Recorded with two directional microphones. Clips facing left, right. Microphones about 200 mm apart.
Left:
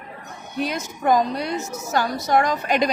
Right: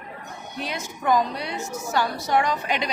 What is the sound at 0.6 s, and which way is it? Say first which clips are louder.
Speech: left 4 dB; 45° left (ahead or behind).